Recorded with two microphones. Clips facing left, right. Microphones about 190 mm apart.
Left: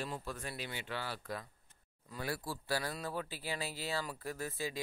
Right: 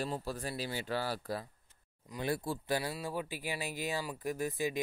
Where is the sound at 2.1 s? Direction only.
20° right (ahead or behind).